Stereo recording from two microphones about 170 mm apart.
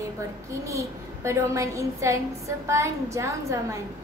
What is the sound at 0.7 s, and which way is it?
A woman's voice, 15° right (ahead or behind).